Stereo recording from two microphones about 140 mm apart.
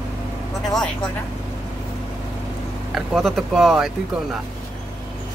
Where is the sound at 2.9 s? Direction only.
Centre (ahead or behind).